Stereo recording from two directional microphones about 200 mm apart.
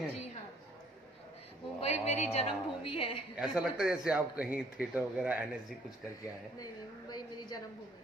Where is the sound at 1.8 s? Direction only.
35° left (ahead or behind).